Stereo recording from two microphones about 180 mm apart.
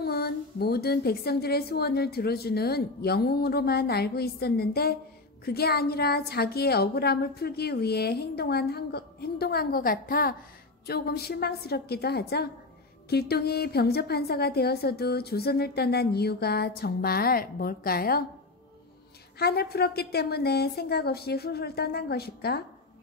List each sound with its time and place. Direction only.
0.0 s a woman's voice: 60° left (ahead or behind)
19.3 s a woman's voice: 60° left (ahead or behind)